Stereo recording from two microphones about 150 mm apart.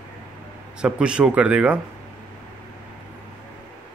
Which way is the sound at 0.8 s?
5° right (ahead or behind).